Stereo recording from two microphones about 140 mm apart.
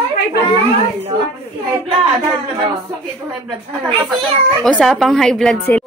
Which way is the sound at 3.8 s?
30° right (ahead or behind).